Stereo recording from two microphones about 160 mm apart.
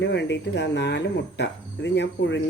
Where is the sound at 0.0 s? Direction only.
90° left.